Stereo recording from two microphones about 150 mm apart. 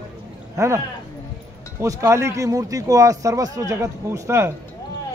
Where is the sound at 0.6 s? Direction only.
20° right (ahead or behind).